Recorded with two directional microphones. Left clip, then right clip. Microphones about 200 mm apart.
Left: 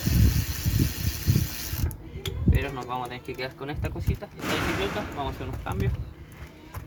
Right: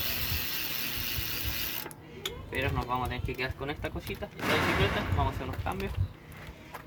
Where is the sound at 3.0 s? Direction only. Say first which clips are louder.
Left 1 dB; 10° right (ahead or behind).